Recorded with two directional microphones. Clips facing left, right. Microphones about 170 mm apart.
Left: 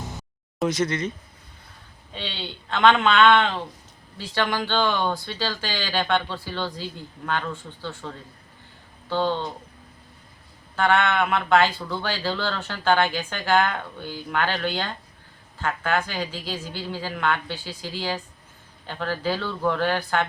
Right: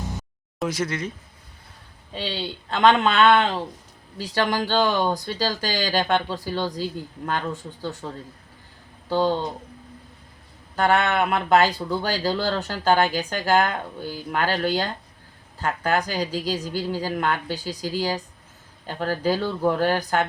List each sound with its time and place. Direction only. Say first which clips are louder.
0.6 s speech: left 2 dB; 5° right (ahead or behind)
2.1 s a woman's voice: right 5 dB; 40° right (ahead or behind)
9.0 s a woman's voice: right 3 dB; 40° right (ahead or behind)
10.8 s a woman's voice: right 1 dB; 40° right (ahead or behind)